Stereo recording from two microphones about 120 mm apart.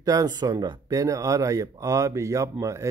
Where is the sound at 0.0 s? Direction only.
30° right (ahead or behind).